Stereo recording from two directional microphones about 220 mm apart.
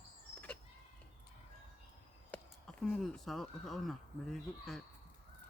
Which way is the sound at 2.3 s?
5° left (ahead or behind).